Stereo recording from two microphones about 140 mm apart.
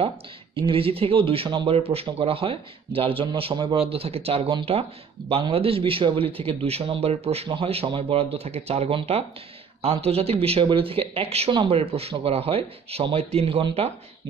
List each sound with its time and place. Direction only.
0.6 s a man's voice: 40° right (ahead or behind)